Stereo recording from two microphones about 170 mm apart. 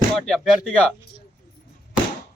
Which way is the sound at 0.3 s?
Centre (ahead or behind).